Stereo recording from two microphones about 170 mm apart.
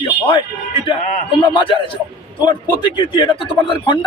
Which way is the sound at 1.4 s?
30° left (ahead or behind).